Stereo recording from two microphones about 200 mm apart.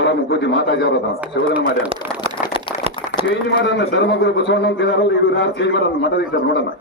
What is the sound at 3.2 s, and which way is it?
Speech, 60° left (ahead or behind).